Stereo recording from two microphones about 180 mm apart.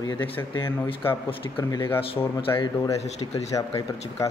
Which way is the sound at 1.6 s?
20° left (ahead or behind).